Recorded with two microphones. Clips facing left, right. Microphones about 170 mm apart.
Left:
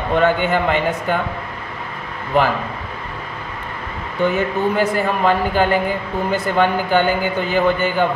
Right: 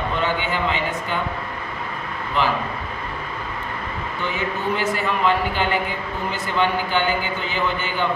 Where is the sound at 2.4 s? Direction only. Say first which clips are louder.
Left 5 dB; 50° left (ahead or behind).